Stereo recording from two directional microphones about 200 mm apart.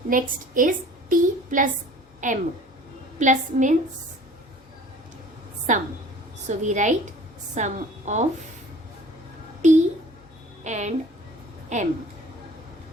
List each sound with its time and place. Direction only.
0.1 s a woman's voice: 40° right (ahead or behind)
5.7 s a woman's voice: 40° right (ahead or behind)
9.6 s a sound: 35° right (ahead or behind)
10.6 s music: 35° right (ahead or behind)
11.7 s a woman's voice: 35° right (ahead or behind)